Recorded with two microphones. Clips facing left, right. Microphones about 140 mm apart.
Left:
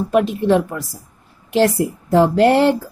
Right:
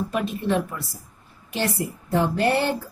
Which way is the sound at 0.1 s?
80° left.